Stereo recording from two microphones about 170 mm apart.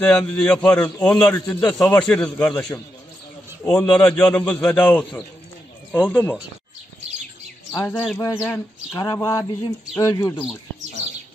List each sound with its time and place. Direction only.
0.0 s a man's voice: 5° left (ahead or behind)
7.9 s a man's voice: 5° left (ahead or behind)
8.5 s speech: 15° left (ahead or behind)